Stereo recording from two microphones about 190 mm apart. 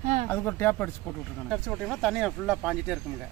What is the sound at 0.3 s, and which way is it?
Speech, 10° left (ahead or behind).